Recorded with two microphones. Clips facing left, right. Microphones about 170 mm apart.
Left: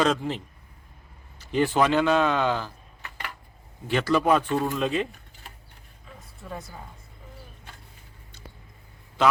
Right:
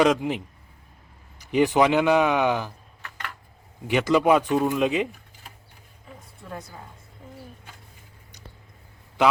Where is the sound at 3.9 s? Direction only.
15° right (ahead or behind).